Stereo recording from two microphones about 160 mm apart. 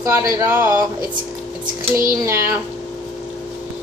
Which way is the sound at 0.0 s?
15° right (ahead or behind).